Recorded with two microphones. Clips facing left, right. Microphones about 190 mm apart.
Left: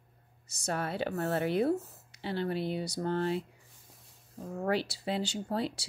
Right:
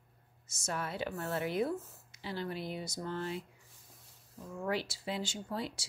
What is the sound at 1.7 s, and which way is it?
Speech, 65° left (ahead or behind).